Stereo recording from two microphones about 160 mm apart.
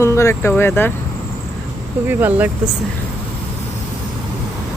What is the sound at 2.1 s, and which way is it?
Speech, 10° right (ahead or behind).